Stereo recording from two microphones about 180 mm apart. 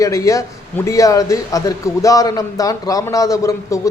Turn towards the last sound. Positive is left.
turn(degrees=20)  # may be behind; listen again after turning